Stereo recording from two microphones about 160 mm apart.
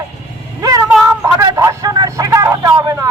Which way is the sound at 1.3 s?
20° right (ahead or behind).